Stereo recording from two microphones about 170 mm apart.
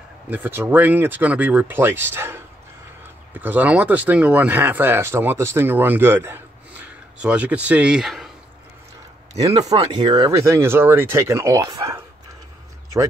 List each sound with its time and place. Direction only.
0.3 s speech: 10° right (ahead or behind)
9.3 s speech: 35° right (ahead or behind); by 12.0 s 20° right (ahead or behind)